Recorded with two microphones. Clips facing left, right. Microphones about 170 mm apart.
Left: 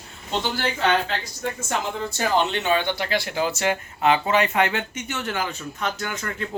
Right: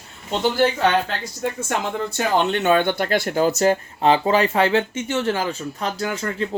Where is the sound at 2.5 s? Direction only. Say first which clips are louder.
Right 5 dB; 50° right (ahead or behind).